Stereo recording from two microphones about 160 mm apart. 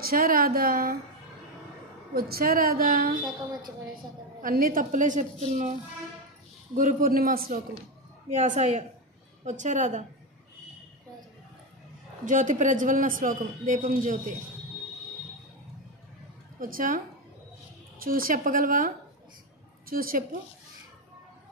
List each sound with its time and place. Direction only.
0.0 s a man's voice: 65° right (ahead or behind)
2.1 s a woman's voice: 70° right (ahead or behind)
4.4 s a woman's voice: 65° right (ahead or behind)
8.5 s a woman's voice: 45° right (ahead or behind)
12.3 s a man's voice: 50° right (ahead or behind)
16.5 s a man's voice: 60° right (ahead or behind)
18.0 s a man's voice: 65° right (ahead or behind)